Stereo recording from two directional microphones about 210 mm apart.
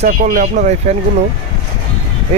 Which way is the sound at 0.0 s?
40° right (ahead or behind).